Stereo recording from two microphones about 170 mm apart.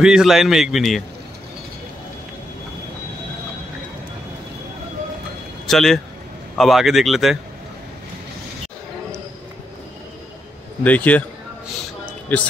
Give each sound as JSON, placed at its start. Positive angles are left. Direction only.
{"t": 0.0, "sound": "a man's voice", "side_deg": -5}
{"t": 5.7, "sound": "a man's voice", "side_deg": 0}
{"t": 10.8, "sound": "a man's voice", "side_deg": 10}